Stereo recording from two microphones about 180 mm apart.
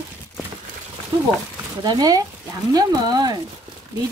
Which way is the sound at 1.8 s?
20° right (ahead or behind).